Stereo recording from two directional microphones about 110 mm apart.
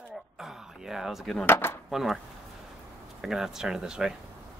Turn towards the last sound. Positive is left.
turn(degrees=-5)  # may be behind; listen again after turning